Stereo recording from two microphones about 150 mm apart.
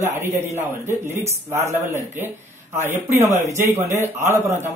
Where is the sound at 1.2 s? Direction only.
20° right (ahead or behind).